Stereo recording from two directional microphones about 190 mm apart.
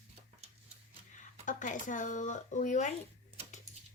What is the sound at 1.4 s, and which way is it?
Speech, 40° left (ahead or behind).